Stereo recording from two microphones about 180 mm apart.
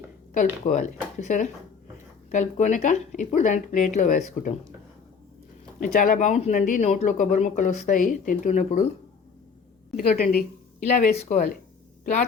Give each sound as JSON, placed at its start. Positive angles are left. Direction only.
{"t": 0.3, "sound": "speech", "side_deg": 40}
{"t": 5.8, "sound": "speech", "side_deg": 45}
{"t": 9.9, "sound": "a woman's voice", "side_deg": 55}
{"t": 11.1, "sound": "speech", "side_deg": 40}